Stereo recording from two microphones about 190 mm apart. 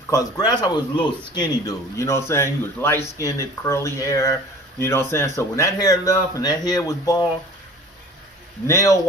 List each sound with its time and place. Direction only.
0.1 s a man's voice: 20° left (ahead or behind)
8.6 s a man's voice: 15° left (ahead or behind)